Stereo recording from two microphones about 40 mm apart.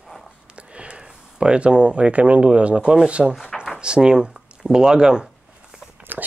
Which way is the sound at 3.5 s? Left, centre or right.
Centre.